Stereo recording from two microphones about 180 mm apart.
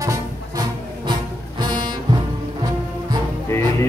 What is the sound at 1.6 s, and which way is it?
Music, 25° right (ahead or behind).